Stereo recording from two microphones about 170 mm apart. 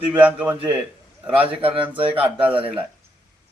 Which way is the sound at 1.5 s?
35° right (ahead or behind).